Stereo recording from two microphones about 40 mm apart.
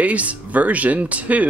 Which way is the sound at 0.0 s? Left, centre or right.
Right.